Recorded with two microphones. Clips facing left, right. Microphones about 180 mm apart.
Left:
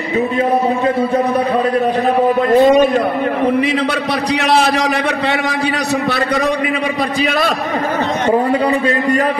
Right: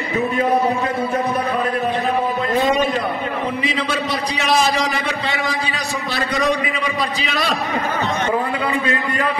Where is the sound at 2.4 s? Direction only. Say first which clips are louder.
Left 9 dB; 50° left (ahead or behind).